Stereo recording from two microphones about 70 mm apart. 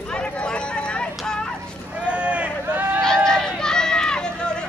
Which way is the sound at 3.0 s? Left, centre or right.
Centre.